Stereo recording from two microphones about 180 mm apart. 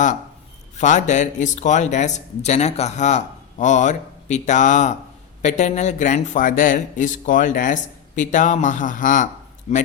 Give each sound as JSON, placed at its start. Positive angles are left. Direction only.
{"t": 0.8, "sound": "a man's voice", "side_deg": 40}